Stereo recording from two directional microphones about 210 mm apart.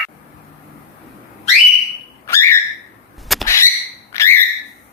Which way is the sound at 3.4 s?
15° left (ahead or behind).